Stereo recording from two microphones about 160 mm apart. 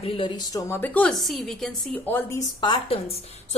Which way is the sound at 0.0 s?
35° left (ahead or behind).